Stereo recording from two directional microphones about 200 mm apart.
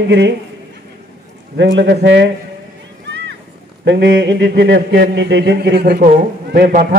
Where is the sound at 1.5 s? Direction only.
60° right (ahead or behind).